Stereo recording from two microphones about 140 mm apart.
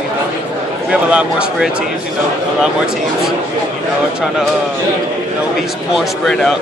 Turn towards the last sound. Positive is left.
turn(degrees=5)  # may be behind; listen again after turning